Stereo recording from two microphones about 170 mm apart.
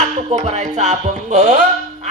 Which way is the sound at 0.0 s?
40° right (ahead or behind).